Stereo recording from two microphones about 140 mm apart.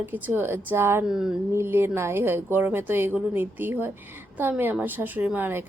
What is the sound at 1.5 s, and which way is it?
A woman's voice, 15° right (ahead or behind).